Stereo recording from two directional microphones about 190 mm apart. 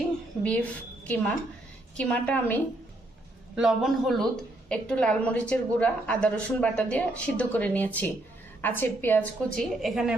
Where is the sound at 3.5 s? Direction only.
Centre (ahead or behind).